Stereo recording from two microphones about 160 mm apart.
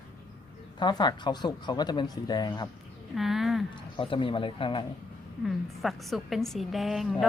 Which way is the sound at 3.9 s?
30° left (ahead or behind).